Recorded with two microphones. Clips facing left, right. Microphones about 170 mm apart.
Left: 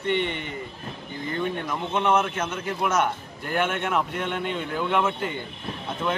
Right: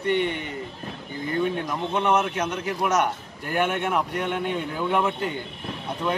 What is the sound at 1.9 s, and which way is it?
Speech, 10° right (ahead or behind).